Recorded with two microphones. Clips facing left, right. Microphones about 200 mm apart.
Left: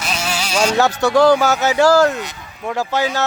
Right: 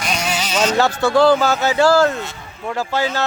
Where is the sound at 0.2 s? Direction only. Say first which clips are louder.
Left 2 dB; 5° left (ahead or behind).